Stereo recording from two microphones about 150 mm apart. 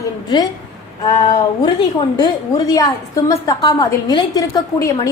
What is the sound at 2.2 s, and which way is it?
A woman's voice, 25° left (ahead or behind).